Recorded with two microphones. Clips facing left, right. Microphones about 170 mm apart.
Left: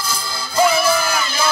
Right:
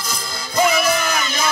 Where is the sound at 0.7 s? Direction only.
30° left (ahead or behind).